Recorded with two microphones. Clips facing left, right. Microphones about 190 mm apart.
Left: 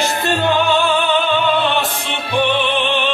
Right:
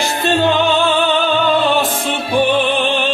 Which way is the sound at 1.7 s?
45° right (ahead or behind).